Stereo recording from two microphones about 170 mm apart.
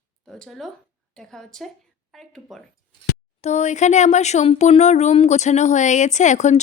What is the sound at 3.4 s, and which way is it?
Speech, 40° left (ahead or behind).